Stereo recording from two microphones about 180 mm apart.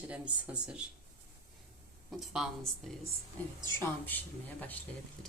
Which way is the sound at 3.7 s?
10° left (ahead or behind).